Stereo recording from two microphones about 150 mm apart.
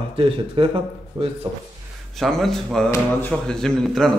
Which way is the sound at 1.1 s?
20° right (ahead or behind).